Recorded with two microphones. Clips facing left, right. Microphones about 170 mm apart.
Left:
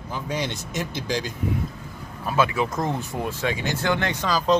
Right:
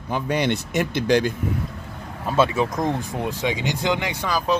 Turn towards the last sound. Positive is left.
turn(degrees=-10)  # may be behind; listen again after turning